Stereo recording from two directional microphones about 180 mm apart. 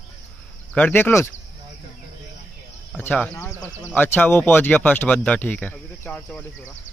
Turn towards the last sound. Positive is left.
turn(degrees=10)  # may be behind; listen again after turning